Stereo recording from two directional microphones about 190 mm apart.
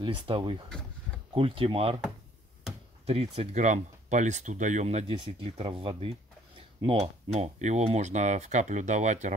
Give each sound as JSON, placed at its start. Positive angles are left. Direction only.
{"t": 0.0, "sound": "speech", "side_deg": -25}
{"t": 3.1, "sound": "speech", "side_deg": -35}